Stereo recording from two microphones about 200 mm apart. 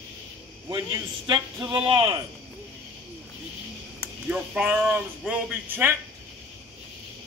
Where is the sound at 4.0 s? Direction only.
5° right (ahead or behind).